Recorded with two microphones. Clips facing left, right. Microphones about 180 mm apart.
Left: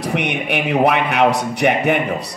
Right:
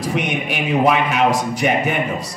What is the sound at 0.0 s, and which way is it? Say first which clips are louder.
A man's voice: even; 65° left (ahead or behind).